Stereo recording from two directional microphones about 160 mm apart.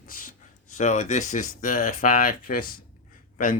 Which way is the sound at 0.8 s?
45° left (ahead or behind).